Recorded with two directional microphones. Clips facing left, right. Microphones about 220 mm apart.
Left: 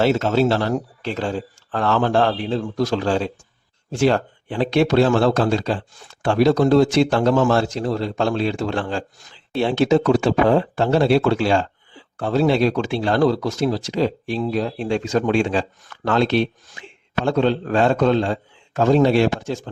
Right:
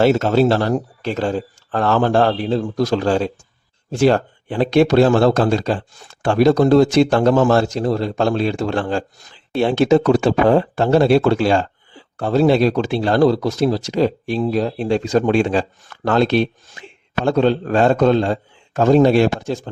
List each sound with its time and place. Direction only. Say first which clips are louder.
0.0 s speech: right 3 dB; 45° right (ahead or behind)